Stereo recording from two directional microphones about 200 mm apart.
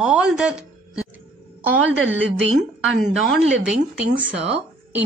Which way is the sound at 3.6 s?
5° right (ahead or behind).